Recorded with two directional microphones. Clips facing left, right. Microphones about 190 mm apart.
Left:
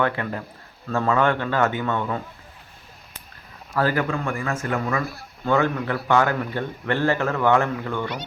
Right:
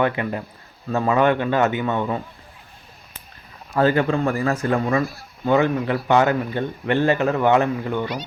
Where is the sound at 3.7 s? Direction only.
25° right (ahead or behind).